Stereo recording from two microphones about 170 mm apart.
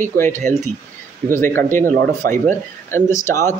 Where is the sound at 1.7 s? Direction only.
15° left (ahead or behind).